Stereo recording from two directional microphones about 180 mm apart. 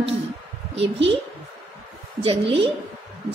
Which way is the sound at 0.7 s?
90° right.